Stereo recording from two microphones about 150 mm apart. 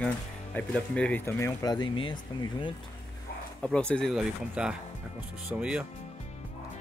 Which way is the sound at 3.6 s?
5° left (ahead or behind).